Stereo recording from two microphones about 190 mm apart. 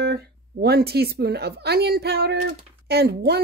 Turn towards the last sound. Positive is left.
turn(degrees=-55)  # may be behind; listen again after turning